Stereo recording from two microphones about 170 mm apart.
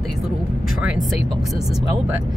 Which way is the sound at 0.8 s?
5° right (ahead or behind).